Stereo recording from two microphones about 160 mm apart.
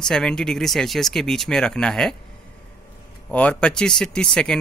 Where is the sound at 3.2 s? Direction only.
5° left (ahead or behind).